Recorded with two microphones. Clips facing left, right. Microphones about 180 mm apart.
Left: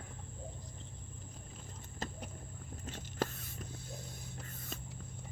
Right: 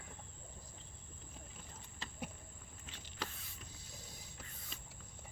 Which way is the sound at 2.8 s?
45° left (ahead or behind).